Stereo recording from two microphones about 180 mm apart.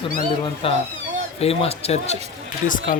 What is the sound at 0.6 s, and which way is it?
Speech, 30° left (ahead or behind).